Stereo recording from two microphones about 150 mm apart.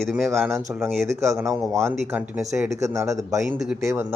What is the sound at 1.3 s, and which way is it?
Speech, 20° right (ahead or behind).